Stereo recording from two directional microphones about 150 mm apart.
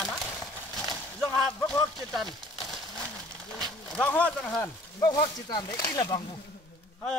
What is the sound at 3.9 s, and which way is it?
Speech, 10° left (ahead or behind).